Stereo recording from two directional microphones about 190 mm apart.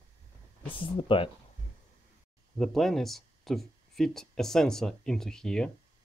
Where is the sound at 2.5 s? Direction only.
Centre (ahead or behind).